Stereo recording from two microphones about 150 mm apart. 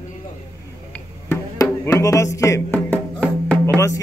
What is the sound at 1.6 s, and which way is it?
Music, 20° left (ahead or behind).